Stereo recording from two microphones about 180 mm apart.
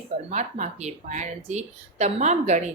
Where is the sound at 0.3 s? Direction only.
40° right (ahead or behind).